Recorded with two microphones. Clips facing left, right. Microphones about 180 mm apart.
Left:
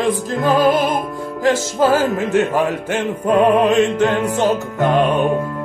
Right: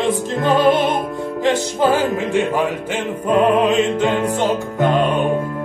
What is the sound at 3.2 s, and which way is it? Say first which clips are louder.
Music: left 1 dB; 10° left (ahead or behind).